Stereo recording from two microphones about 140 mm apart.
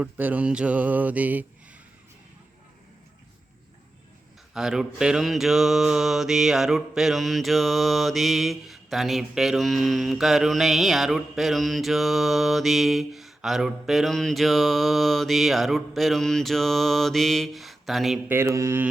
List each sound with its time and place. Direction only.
0.0 s mantra: 10° right (ahead or behind)
4.5 s mantra: 5° right (ahead or behind)
18.3 s mantra: 15° right (ahead or behind)